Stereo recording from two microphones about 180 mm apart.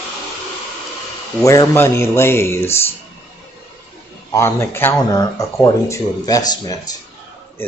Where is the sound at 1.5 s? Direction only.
15° left (ahead or behind).